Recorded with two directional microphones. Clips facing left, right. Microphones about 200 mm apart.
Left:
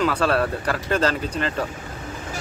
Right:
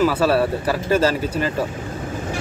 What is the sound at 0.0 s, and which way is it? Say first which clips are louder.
Speech: right 4 dB; 5° right (ahead or behind).